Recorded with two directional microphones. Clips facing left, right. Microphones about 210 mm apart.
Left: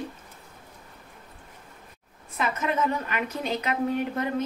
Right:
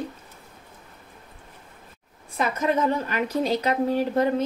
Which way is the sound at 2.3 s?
35° right (ahead or behind).